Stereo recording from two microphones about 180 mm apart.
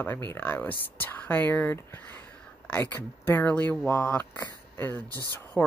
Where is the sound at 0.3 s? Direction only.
10° left (ahead or behind).